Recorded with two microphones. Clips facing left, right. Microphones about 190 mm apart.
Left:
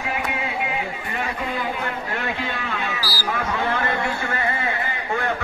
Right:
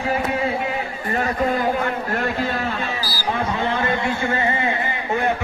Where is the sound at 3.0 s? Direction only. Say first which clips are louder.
Right 1 dB; 35° left (ahead or behind).